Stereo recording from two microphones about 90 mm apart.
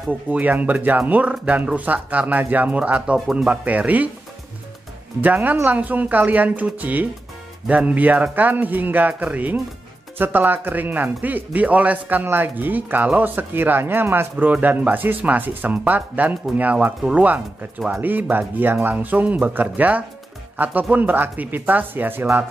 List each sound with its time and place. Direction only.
0.3 s speech: 15° right (ahead or behind)
5.2 s speech: 20° right (ahead or behind)